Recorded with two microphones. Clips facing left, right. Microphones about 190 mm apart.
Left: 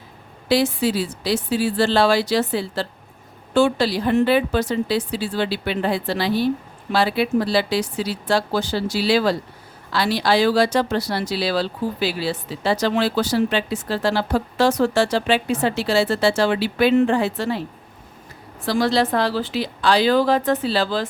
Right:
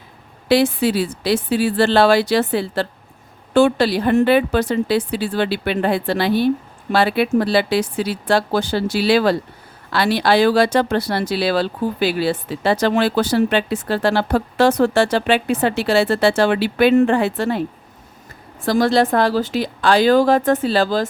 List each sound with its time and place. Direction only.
0.4 s speech: 60° right (ahead or behind)
18.6 s a woman's voice: 50° right (ahead or behind)